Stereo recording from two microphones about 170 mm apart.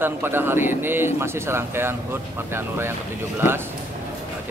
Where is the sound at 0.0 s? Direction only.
10° right (ahead or behind).